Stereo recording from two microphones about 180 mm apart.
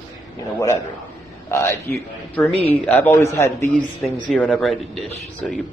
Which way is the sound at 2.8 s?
10° left (ahead or behind).